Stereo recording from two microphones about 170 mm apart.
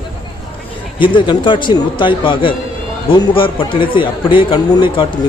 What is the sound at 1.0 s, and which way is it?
A man's voice, 30° left (ahead or behind).